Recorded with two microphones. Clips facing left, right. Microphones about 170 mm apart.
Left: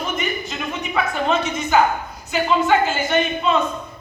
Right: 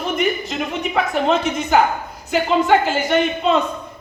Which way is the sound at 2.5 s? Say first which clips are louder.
Right 1 dB; 65° right (ahead or behind).